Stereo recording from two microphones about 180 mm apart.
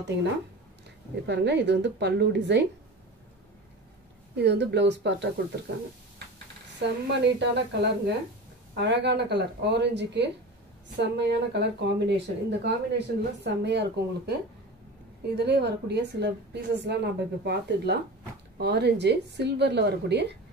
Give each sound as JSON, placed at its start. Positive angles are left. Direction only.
{"t": 0.0, "sound": "speech", "side_deg": -75}
{"t": 4.4, "sound": "speech", "side_deg": -70}
{"t": 7.2, "sound": "speech", "side_deg": -70}